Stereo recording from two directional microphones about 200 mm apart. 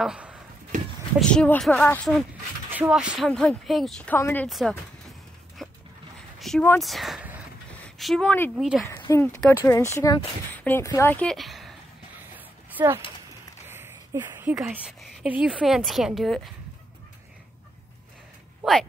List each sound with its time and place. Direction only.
0.0 s speech: 5° right (ahead or behind)
0.7 s a sound: 40° right (ahead or behind)
1.2 s speech: 5° left (ahead or behind)
5.6 s dog: centre (ahead or behind)
6.4 s speech: centre (ahead or behind)
12.4 s a sound: 10° right (ahead or behind)
13.7 s speech: 10° right (ahead or behind)
18.6 s speech: centre (ahead or behind)